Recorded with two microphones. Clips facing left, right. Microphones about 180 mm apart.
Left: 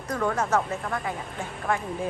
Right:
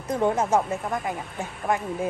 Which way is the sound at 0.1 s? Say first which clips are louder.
Right 3 dB; 25° right (ahead or behind).